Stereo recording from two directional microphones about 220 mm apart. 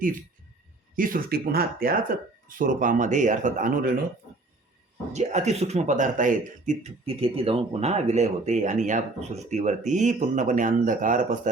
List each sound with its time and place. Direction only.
0.9 s speech: 40° right (ahead or behind)
5.1 s speech: 30° right (ahead or behind)